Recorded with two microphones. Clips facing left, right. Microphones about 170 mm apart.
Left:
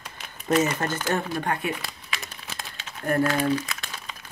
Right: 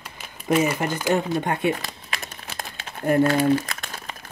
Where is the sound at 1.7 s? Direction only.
50° right (ahead or behind).